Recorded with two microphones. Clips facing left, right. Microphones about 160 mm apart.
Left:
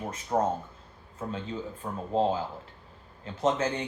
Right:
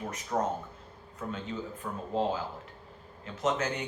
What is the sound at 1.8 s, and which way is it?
Speech, 30° left (ahead or behind).